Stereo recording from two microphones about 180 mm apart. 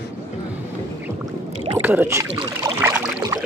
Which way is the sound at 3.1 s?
20° right (ahead or behind).